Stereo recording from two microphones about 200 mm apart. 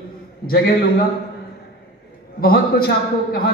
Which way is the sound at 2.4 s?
50° left (ahead or behind).